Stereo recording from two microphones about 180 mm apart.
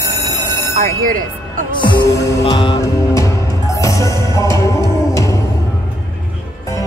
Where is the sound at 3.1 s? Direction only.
15° left (ahead or behind).